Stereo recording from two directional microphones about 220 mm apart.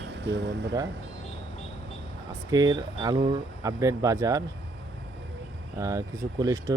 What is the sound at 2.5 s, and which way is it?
Speech, 15° right (ahead or behind).